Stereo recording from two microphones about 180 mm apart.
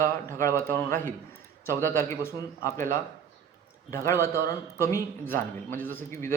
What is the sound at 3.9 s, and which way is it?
A man's voice, 15° left (ahead or behind).